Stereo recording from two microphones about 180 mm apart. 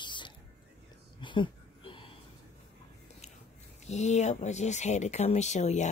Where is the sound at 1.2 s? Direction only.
25° left (ahead or behind).